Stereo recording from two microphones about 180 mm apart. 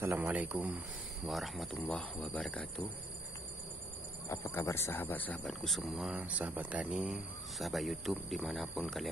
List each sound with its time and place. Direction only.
0.0 s speech: 10° right (ahead or behind); by 2.7 s 5° left (ahead or behind)
4.3 s speech: 15° left (ahead or behind); by 9.1 s centre (ahead or behind)